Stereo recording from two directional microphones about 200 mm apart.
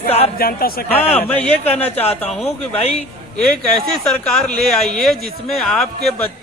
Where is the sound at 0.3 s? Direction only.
50° left (ahead or behind).